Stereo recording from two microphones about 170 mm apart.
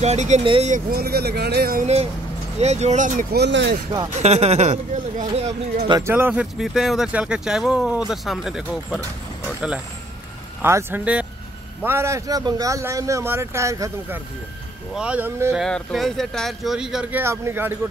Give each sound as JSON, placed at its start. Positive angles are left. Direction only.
{"t": 0.0, "sound": "speech", "side_deg": -40}
{"t": 0.7, "sound": "speech", "side_deg": -60}
{"t": 2.6, "sound": "speech", "side_deg": -40}
{"t": 3.3, "sound": "speech", "side_deg": -90}
{"t": 4.1, "sound": "speech", "side_deg": -40}
{"t": 5.9, "sound": "a man's voice", "side_deg": -20}
{"t": 6.4, "sound": "speech", "side_deg": 0}
{"t": 10.6, "sound": "a man's voice", "side_deg": -15}
{"t": 15.5, "sound": "speech", "side_deg": 0}